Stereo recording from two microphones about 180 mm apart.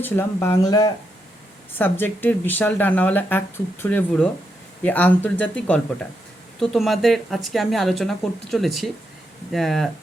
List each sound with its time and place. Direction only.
0.0 s speech: 10° left (ahead or behind)